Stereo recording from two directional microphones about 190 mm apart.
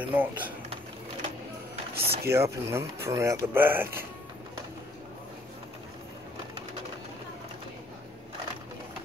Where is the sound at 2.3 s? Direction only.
15° right (ahead or behind).